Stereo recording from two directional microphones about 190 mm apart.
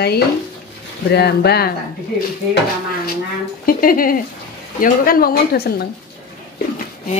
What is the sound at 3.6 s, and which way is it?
Speech, 50° left (ahead or behind).